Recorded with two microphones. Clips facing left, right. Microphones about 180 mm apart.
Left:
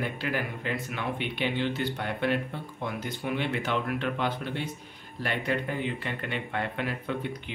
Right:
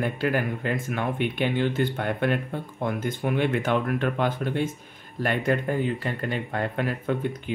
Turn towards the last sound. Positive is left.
turn(degrees=-45)  # may be behind; listen again after turning